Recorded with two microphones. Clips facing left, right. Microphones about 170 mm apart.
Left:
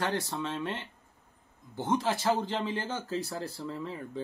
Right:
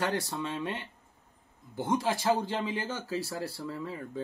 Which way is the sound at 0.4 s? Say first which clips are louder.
Even; 15° right (ahead or behind).